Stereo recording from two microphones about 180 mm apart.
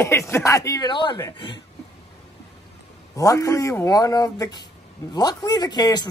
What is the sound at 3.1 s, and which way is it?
A man's voice, 20° left (ahead or behind).